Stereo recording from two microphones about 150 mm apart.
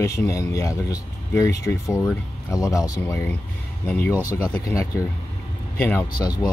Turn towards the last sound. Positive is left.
turn(degrees=25)  # may be behind; listen again after turning